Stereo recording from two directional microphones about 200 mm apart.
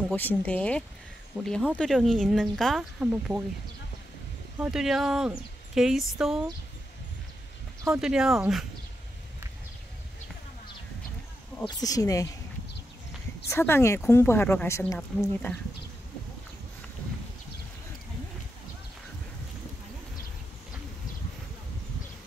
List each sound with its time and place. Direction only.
0.1 s a woman's voice: 10° left (ahead or behind)
4.6 s speech: centre (ahead or behind)
7.9 s speech: 5° right (ahead or behind)
11.6 s a woman's voice: 15° left (ahead or behind)
13.5 s a woman's voice: 10° left (ahead or behind)